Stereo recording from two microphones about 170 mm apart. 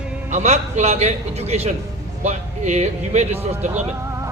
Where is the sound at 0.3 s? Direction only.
40° right (ahead or behind).